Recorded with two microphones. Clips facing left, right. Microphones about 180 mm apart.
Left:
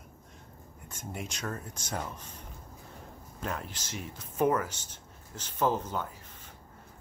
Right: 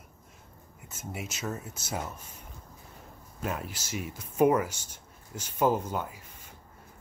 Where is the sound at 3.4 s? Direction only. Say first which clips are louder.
Right 2 dB; 10° right (ahead or behind).